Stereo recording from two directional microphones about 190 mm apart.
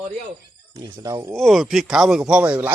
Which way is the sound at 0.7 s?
20° right (ahead or behind).